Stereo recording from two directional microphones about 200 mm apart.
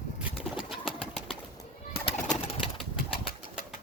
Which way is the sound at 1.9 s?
30° left (ahead or behind).